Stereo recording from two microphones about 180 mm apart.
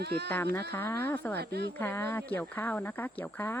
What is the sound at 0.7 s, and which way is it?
Speech, 10° left (ahead or behind).